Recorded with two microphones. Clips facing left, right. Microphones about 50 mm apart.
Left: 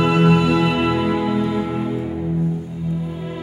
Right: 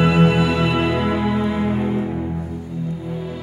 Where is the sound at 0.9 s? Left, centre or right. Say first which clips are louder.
Left 1 dB; centre.